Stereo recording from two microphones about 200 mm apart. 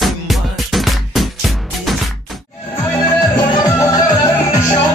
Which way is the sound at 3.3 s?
20° left (ahead or behind).